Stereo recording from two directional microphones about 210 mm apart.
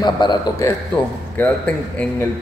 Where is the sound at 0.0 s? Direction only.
20° left (ahead or behind).